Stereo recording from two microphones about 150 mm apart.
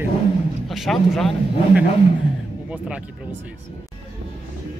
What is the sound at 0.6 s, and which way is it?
Speech, centre (ahead or behind).